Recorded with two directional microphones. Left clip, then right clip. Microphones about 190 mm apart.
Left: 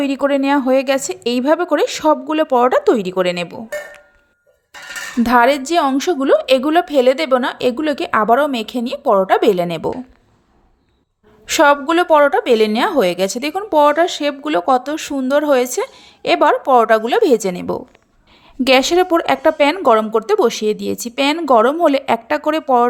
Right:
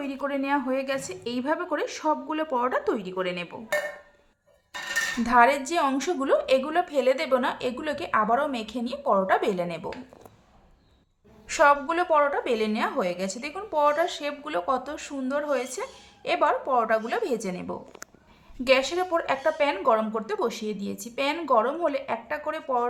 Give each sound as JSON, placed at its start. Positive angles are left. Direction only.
{"t": 0.0, "sound": "a woman's voice", "side_deg": 40}
{"t": 5.2, "sound": "a woman's voice", "side_deg": 35}
{"t": 11.4, "sound": "a woman's voice", "side_deg": 40}